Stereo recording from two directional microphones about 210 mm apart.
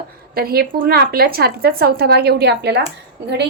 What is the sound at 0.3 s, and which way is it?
A woman's voice, 45° right (ahead or behind).